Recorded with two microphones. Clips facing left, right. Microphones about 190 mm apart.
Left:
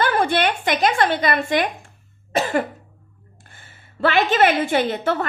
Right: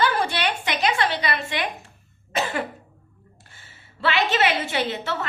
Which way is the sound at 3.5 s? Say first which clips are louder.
Left 9 dB; 50° left (ahead or behind).